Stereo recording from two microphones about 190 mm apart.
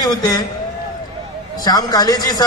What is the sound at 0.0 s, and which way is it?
Speech, 20° left (ahead or behind).